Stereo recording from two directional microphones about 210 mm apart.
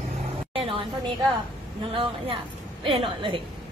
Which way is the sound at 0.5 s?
25° right (ahead or behind).